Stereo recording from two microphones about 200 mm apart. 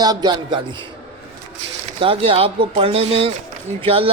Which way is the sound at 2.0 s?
30° right (ahead or behind).